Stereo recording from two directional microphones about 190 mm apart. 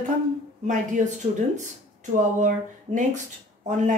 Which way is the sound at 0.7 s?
40° right (ahead or behind).